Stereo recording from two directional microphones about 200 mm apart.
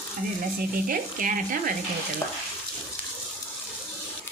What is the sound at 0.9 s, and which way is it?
Speech, 45° right (ahead or behind).